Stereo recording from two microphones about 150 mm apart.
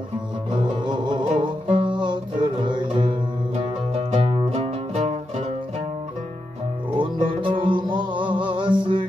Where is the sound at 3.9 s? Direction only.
40° right (ahead or behind).